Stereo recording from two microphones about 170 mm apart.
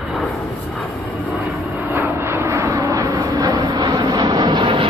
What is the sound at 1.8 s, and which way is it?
Vehicle, 15° right (ahead or behind).